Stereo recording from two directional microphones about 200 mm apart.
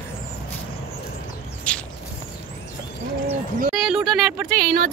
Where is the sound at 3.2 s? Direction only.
40° right (ahead or behind).